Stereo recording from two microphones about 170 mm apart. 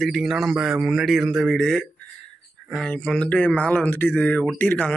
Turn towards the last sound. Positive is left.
turn(degrees=10)  # may be behind; listen again after turning